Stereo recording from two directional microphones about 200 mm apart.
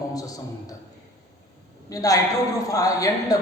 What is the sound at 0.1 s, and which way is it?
Speech, 15° left (ahead or behind).